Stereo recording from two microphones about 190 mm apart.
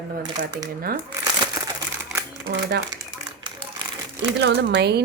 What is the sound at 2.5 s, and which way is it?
Speech, 60° right (ahead or behind).